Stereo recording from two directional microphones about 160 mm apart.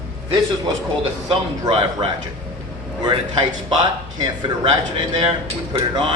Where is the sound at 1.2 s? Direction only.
35° right (ahead or behind).